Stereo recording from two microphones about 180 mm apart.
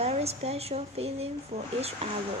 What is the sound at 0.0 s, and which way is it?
Speech, 35° right (ahead or behind).